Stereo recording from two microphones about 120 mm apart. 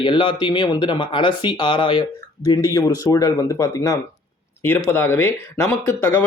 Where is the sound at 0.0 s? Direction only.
40° left (ahead or behind).